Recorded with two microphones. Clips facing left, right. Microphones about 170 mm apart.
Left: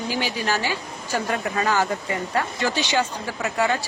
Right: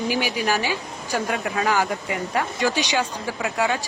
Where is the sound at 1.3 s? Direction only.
5° right (ahead or behind).